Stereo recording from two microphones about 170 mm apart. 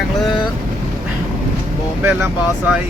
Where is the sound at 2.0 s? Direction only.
10° right (ahead or behind).